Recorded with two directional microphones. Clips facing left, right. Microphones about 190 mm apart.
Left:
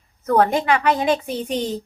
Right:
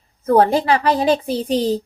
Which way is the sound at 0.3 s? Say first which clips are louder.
Right 3 dB; 30° right (ahead or behind).